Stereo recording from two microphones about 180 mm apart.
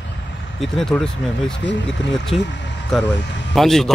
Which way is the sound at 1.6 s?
80° left.